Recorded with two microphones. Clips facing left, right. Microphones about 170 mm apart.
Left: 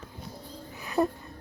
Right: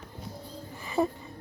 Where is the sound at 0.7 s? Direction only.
5° left (ahead or behind).